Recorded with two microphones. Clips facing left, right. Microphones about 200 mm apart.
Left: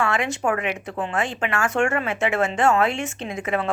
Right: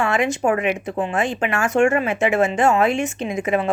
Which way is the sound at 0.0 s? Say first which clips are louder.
Right 4 dB; 20° right (ahead or behind).